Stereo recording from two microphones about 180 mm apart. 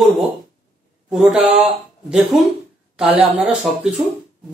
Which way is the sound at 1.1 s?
5° right (ahead or behind).